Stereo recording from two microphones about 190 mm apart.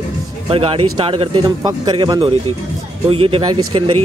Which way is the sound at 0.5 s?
30° right (ahead or behind).